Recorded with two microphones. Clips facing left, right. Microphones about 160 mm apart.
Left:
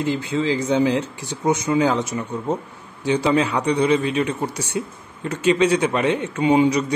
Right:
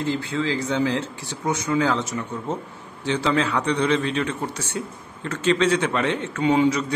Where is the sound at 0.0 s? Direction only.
15° left (ahead or behind).